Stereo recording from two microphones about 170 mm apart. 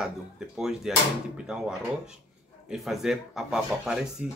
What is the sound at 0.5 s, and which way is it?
Speech, 5° right (ahead or behind).